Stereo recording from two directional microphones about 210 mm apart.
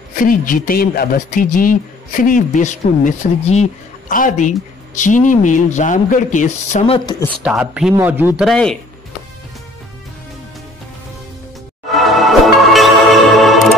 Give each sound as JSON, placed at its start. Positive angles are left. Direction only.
{"t": 0.2, "sound": "a man's voice", "side_deg": 40}
{"t": 7.1, "sound": "speech", "side_deg": 15}
{"t": 7.4, "sound": "speech", "side_deg": -5}
{"t": 11.9, "sound": "music", "side_deg": 0}